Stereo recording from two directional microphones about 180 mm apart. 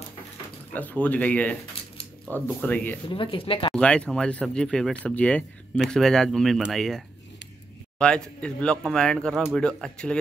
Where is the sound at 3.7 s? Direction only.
5° left (ahead or behind).